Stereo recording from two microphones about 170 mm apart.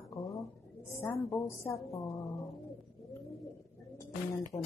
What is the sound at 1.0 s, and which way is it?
Speech, 15° left (ahead or behind).